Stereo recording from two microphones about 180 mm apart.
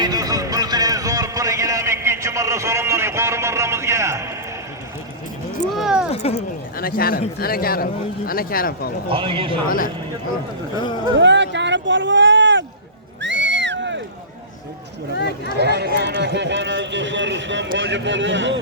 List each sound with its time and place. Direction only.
0.0 s music: 20° right (ahead or behind)
5.7 s a sound: centre (ahead or behind)
6.1 s a sound: 35° left (ahead or behind)
6.7 s a man's voice: 55° left (ahead or behind)
9.0 s speech: 30° right (ahead or behind)
9.6 s speech: 50° left (ahead or behind)
10.8 s speech: 25° left (ahead or behind)
11.2 s speech: 80° right
13.2 s a sound: 90° right
15.1 s speech: 70° left (ahead or behind)
15.5 s a man's voice: 65° right (ahead or behind); by 18.6 s 90° right